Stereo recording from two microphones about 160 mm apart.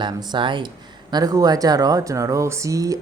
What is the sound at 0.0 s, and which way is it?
Speech, 25° right (ahead or behind).